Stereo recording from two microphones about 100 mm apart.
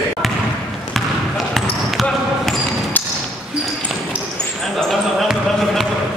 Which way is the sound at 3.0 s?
20° left (ahead or behind).